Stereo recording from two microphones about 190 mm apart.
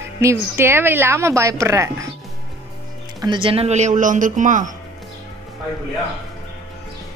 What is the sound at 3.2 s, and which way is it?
Speech, 25° right (ahead or behind).